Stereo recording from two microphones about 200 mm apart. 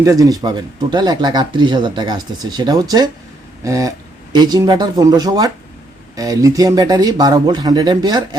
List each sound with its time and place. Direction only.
0.0 s speech: 15° right (ahead or behind)
3.6 s a sound: 15° right (ahead or behind)
4.4 s speech: 20° right (ahead or behind)